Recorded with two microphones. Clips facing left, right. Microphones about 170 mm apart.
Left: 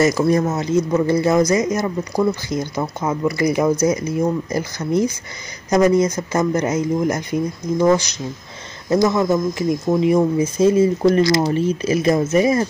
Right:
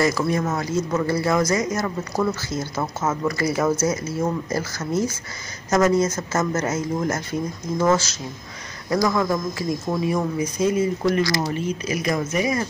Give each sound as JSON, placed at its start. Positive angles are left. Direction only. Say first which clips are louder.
{"t": 0.0, "sound": "speech", "louder": "left 5 dB", "side_deg": 25}
{"t": 0.3, "sound": "speech", "louder": "left 6 dB", "side_deg": 35}
{"t": 0.6, "sound": "speech", "louder": "left 5 dB", "side_deg": 20}